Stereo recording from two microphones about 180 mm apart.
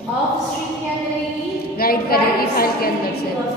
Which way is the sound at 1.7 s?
55° left (ahead or behind).